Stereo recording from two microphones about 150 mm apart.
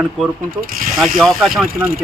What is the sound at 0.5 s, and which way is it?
Speech, 70° right (ahead or behind).